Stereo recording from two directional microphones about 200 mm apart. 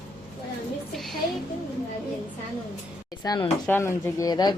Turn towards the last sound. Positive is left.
turn(degrees=20)  # may be behind; listen again after turning